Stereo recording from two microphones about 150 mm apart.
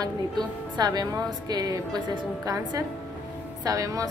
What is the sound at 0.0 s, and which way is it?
A woman's voice, 25° right (ahead or behind).